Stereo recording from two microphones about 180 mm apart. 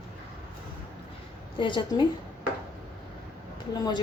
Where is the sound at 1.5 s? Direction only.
25° left (ahead or behind).